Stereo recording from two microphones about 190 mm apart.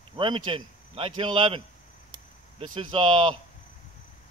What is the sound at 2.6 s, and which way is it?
Speech, 25° right (ahead or behind).